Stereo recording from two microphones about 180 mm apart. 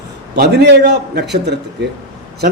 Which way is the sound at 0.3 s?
65° right (ahead or behind).